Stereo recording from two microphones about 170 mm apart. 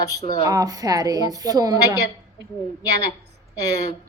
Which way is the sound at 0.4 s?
20° right (ahead or behind).